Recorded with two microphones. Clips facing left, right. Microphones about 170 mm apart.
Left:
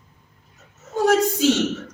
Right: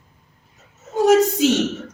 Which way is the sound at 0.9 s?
20° right (ahead or behind).